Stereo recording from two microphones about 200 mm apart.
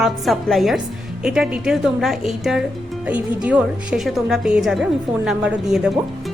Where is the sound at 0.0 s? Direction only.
Centre (ahead or behind).